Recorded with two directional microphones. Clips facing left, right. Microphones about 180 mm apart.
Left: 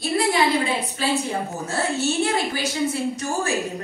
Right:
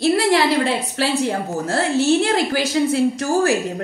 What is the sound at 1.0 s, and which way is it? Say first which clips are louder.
A woman's voice: right 4 dB; 80° right.